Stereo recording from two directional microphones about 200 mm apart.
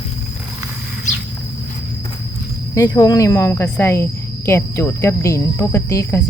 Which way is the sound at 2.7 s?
15° left (ahead or behind).